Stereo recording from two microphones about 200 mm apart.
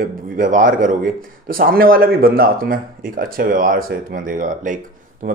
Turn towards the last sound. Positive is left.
turn(degrees=-40)  # may be behind; listen again after turning